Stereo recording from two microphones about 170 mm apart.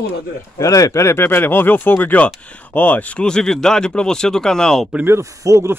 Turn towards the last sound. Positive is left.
turn(degrees=-15)  # may be behind; listen again after turning